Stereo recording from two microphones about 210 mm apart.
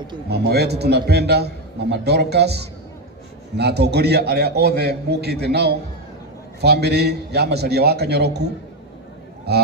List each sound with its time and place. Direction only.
0.3 s a man's voice: 50° right (ahead or behind)
9.5 s a man's voice: 50° right (ahead or behind)